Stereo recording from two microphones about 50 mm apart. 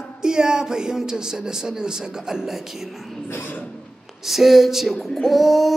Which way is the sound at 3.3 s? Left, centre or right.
Left.